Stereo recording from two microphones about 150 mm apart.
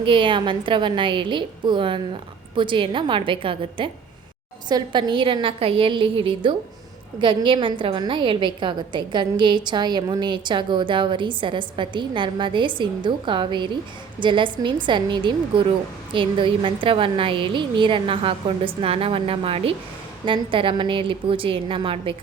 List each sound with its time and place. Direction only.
0.0 s a woman's voice: 35° right (ahead or behind)